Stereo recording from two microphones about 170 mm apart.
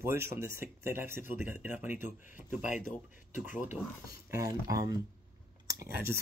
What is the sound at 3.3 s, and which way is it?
Speech, 50° left (ahead or behind).